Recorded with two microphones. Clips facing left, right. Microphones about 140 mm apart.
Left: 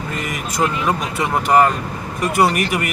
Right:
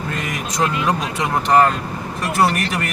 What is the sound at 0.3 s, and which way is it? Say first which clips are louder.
Speech: left 1 dB; 5° left (ahead or behind).